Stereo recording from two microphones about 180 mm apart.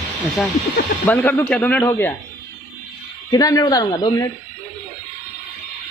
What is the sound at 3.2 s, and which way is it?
Speech, 20° left (ahead or behind).